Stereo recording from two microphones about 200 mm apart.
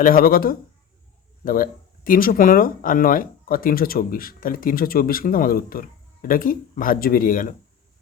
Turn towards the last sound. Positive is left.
turn(degrees=45)  # may be behind; listen again after turning